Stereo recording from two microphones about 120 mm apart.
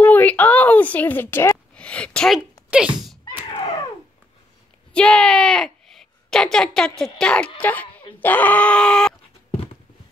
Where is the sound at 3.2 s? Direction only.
40° left (ahead or behind).